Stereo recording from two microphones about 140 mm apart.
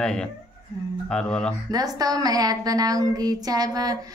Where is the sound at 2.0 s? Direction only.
25° right (ahead or behind).